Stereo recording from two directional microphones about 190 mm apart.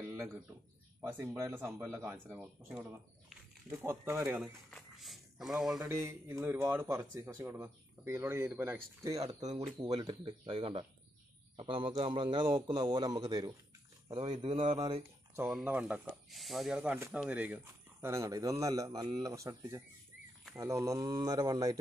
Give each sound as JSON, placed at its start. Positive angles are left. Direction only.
{"t": 0.0, "sound": "a sound", "side_deg": -10}
{"t": 1.0, "sound": "speech", "side_deg": -10}
{"t": 4.6, "sound": "speech", "side_deg": 0}
{"t": 5.9, "sound": "a man's voice", "side_deg": -15}
{"t": 15.3, "sound": "a man's voice", "side_deg": -5}